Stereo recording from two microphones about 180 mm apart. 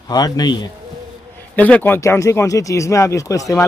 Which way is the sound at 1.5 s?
10° left (ahead or behind).